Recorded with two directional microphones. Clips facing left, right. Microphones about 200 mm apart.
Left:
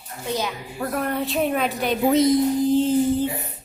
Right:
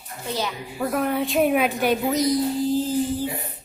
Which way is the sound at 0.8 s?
5° right (ahead or behind).